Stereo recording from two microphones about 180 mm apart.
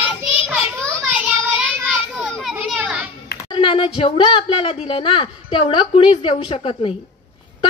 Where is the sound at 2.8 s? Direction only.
5° right (ahead or behind).